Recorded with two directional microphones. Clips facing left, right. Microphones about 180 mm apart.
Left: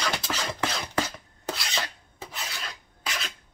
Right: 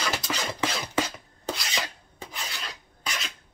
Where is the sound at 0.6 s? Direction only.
15° right (ahead or behind).